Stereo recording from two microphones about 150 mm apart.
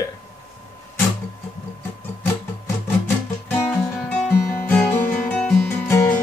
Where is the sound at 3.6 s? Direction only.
5° right (ahead or behind).